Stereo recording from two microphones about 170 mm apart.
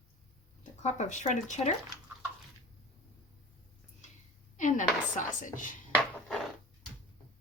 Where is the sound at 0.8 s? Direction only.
45° left (ahead or behind).